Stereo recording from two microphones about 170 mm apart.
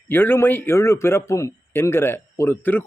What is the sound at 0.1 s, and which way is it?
A man's voice, 10° left (ahead or behind).